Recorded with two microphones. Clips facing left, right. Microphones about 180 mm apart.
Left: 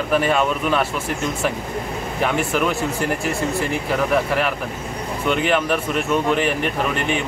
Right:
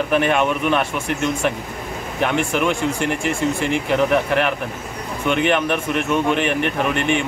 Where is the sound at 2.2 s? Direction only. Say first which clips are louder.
Right 1 dB; 10° left (ahead or behind).